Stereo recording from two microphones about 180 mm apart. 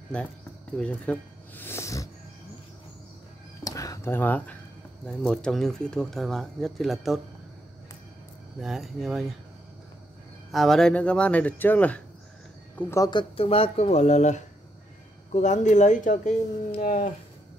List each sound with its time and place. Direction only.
0.1 s speech: 5° left (ahead or behind)
3.6 s a sound: 20° left (ahead or behind)
5.0 s speech: 5° left (ahead or behind)
8.5 s speech: centre (ahead or behind)
10.5 s speech: centre (ahead or behind); by 17.0 s 40° left (ahead or behind)